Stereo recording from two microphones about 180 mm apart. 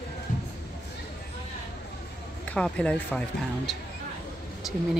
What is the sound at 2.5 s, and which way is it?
Speech, 5° left (ahead or behind).